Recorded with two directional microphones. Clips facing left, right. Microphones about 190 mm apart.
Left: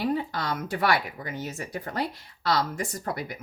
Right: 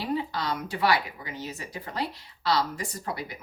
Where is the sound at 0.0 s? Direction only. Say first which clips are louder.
Left 2 dB; 50° left (ahead or behind).